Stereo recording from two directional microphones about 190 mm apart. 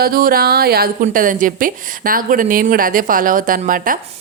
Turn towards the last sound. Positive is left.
turn(degrees=-45)  # may be behind; listen again after turning